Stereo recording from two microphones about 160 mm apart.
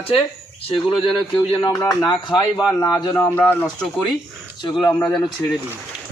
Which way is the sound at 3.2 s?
10° left (ahead or behind).